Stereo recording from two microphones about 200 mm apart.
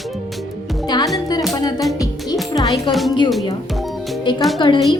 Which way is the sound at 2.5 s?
20° left (ahead or behind).